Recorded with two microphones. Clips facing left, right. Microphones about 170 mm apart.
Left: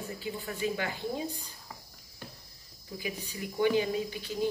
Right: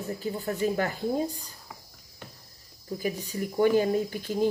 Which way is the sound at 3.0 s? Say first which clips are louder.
Right 7 dB; 45° right (ahead or behind).